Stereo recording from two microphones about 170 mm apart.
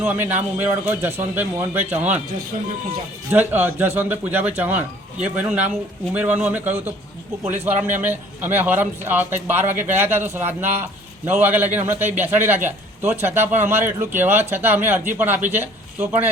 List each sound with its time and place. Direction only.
0.0 s a man's voice: 10° right (ahead or behind)
3.2 s a man's voice: 10° right (ahead or behind)